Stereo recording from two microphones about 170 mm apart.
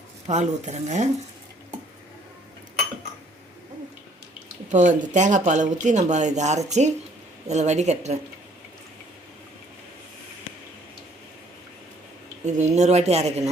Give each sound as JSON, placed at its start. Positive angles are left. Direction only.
{"t": 0.3, "sound": "speech", "side_deg": -45}
{"t": 4.7, "sound": "speech", "side_deg": -45}
{"t": 12.5, "sound": "speech", "side_deg": -45}